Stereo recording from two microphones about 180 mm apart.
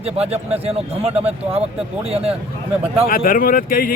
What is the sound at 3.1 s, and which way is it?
Speech, 50° left (ahead or behind).